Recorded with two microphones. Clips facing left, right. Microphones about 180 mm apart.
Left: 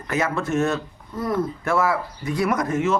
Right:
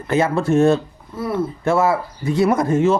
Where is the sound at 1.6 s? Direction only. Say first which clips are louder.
Right 7 dB; 25° right (ahead or behind).